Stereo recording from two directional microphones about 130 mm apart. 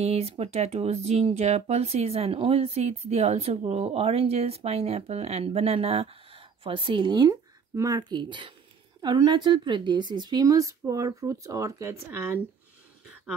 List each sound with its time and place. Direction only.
0.0 s speech: 55° right (ahead or behind); by 8.0 s 25° right (ahead or behind)
8.0 s a woman's voice: 40° right (ahead or behind); by 12.4 s 20° right (ahead or behind)